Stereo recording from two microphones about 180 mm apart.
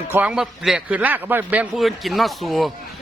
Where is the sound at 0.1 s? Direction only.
5° right (ahead or behind).